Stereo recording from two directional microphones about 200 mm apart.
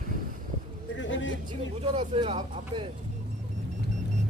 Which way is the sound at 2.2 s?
30° right (ahead or behind).